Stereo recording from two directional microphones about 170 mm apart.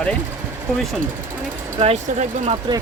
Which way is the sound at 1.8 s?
40° right (ahead or behind).